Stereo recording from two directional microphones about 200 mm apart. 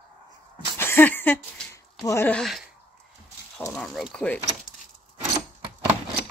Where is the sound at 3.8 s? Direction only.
Centre (ahead or behind).